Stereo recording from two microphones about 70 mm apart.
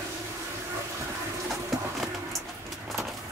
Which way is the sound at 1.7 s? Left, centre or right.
Centre.